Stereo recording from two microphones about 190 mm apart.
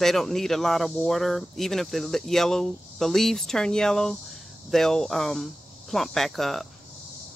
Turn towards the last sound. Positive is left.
turn(degrees=0)  # may be behind; listen again after turning